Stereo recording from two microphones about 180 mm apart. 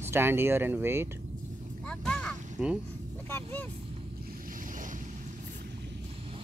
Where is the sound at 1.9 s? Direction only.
5° left (ahead or behind).